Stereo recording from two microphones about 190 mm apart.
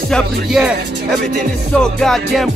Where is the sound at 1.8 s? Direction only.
Centre (ahead or behind).